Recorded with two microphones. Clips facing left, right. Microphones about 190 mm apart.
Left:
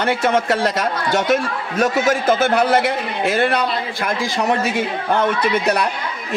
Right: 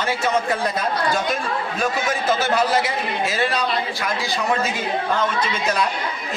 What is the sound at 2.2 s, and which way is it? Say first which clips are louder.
Speech: left 1 dB; 55° left (ahead or behind).